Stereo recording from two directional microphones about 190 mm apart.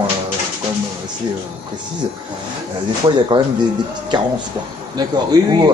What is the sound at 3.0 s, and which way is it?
Speech, 25° right (ahead or behind).